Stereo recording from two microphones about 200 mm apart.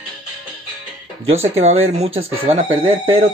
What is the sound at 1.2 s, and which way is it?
Speech, 30° right (ahead or behind).